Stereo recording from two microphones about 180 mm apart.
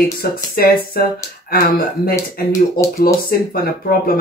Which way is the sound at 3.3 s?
55° left (ahead or behind).